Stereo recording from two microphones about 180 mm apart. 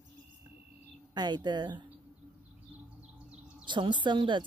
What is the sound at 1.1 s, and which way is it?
Speech, 25° right (ahead or behind).